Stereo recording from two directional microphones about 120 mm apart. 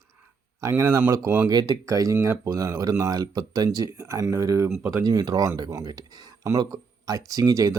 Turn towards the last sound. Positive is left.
turn(degrees=-30)  # may be behind; listen again after turning